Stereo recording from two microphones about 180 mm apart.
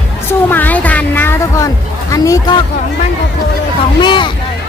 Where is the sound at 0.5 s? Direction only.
10° left (ahead or behind).